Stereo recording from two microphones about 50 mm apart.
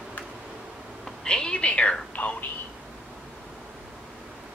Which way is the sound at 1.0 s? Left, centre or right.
Centre.